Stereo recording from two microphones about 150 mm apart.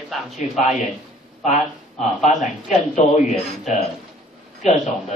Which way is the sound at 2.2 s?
55° left (ahead or behind).